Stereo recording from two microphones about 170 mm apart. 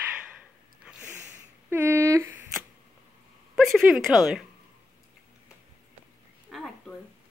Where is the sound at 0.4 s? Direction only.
5° right (ahead or behind).